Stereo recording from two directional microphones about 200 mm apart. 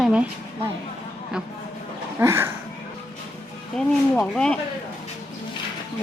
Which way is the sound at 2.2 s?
15° right (ahead or behind).